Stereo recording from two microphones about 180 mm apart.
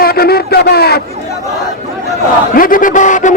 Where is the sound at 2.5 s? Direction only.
50° left (ahead or behind).